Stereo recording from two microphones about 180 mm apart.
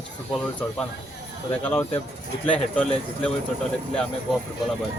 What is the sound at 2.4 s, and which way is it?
Speech, 10° left (ahead or behind).